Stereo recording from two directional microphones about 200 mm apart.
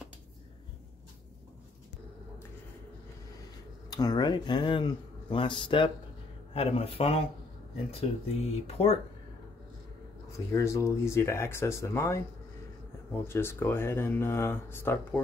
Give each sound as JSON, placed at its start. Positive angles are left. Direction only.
{"t": 3.9, "sound": "speech", "side_deg": 20}
{"t": 10.3, "sound": "speech", "side_deg": 15}
{"t": 13.3, "sound": "speech", "side_deg": 10}